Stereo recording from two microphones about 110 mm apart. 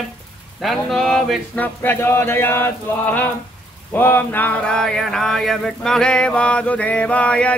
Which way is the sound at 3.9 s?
20° left (ahead or behind).